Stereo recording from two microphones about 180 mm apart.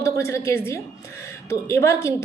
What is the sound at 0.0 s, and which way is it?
A woman's voice, 15° left (ahead or behind).